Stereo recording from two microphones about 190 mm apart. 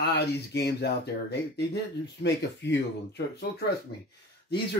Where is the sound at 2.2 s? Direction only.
65° left (ahead or behind).